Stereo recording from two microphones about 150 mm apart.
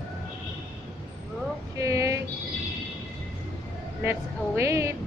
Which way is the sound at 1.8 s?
20° right (ahead or behind).